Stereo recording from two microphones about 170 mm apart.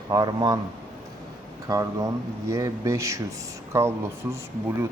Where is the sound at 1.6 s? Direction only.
20° right (ahead or behind).